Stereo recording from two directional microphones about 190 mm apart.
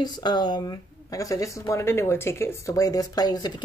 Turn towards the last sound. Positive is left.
turn(degrees=20)  # may be behind; listen again after turning